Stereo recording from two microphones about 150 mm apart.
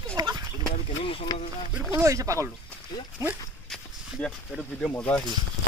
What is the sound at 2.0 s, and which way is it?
Speech, 20° right (ahead or behind).